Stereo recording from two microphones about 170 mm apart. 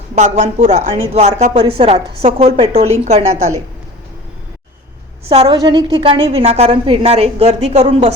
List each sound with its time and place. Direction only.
0.2 s a woman's voice: 45° right (ahead or behind)
5.3 s a woman's voice: 30° right (ahead or behind)